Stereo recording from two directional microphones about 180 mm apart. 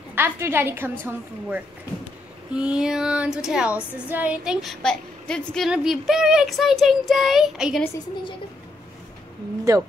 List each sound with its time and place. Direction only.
0.1 s a woman's voice: 10° right (ahead or behind)
2.5 s child singing: 5° right (ahead or behind)
9.7 s a woman's voice: 15° right (ahead or behind)